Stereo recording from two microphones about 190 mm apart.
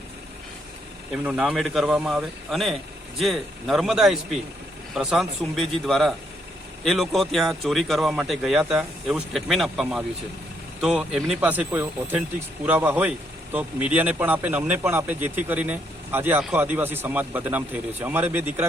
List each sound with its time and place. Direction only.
1.1 s a man's voice: 5° right (ahead or behind)